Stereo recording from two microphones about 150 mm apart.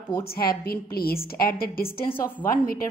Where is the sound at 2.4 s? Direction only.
75° left (ahead or behind).